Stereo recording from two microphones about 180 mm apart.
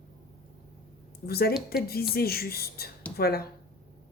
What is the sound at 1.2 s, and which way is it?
A woman's voice, 60° left (ahead or behind).